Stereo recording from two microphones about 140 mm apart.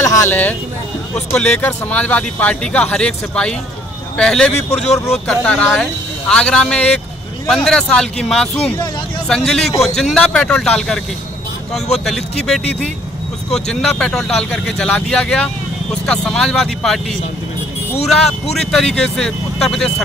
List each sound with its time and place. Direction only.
0.0 s speech: 20° left (ahead or behind); by 11.0 s 5° left (ahead or behind)
12.0 s speech: centre (ahead or behind)
18.0 s speech: centre (ahead or behind)